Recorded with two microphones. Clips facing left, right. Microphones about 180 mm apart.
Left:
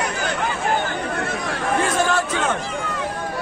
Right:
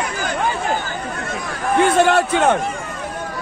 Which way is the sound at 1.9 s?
60° right (ahead or behind).